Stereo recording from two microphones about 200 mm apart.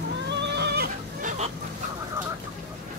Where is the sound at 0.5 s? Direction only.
55° right (ahead or behind).